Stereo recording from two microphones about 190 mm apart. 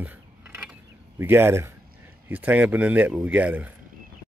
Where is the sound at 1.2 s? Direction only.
10° right (ahead or behind).